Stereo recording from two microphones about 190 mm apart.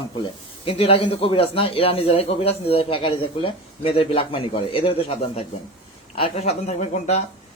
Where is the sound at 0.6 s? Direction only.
30° left (ahead or behind).